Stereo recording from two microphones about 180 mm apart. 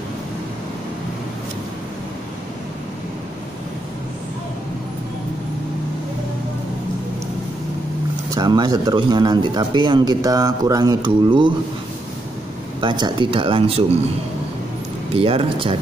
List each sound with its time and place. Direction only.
8.3 s speech: 20° right (ahead or behind)
12.8 s speech: 25° right (ahead or behind)
15.1 s speech: 30° right (ahead or behind)